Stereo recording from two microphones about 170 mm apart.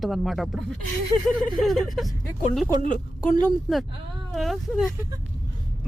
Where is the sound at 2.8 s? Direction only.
50° left (ahead or behind).